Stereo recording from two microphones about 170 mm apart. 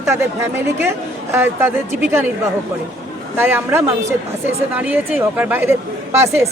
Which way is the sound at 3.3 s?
10° right (ahead or behind).